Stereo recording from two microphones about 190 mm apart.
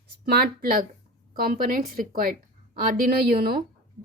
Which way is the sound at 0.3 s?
50° right (ahead or behind).